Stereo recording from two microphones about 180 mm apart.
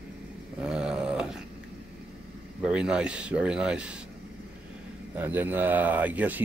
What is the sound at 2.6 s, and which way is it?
Speech, 5° right (ahead or behind).